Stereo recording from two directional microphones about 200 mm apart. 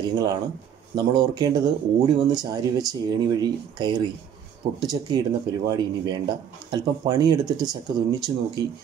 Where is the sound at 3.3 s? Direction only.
20° right (ahead or behind).